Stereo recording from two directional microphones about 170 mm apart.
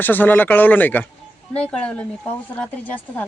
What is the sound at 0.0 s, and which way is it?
A man's voice, 10° left (ahead or behind).